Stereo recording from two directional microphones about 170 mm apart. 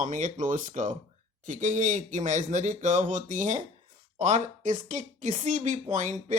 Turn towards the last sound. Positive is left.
turn(degrees=-45)  # may be behind; listen again after turning